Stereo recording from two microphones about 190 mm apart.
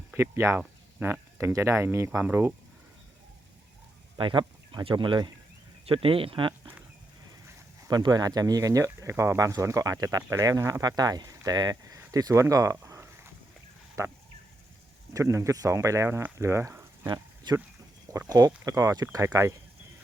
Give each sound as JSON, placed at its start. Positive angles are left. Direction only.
{"t": 0.1, "sound": "speech", "side_deg": -15}
{"t": 4.2, "sound": "speech", "side_deg": -25}
{"t": 17.1, "sound": "a sound", "side_deg": -20}
{"t": 18.1, "sound": "speech", "side_deg": -15}